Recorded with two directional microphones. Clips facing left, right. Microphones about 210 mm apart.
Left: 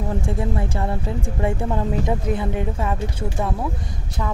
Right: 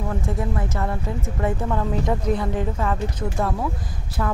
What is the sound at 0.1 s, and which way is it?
Speech, 25° left (ahead or behind).